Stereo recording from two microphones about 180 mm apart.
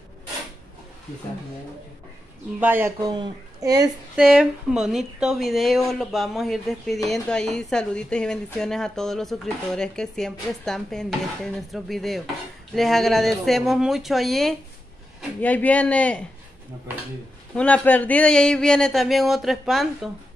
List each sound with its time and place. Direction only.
2.6 s speech: 10° right (ahead or behind)
4.2 s speech: 5° right (ahead or behind)
17.6 s speech: 10° left (ahead or behind)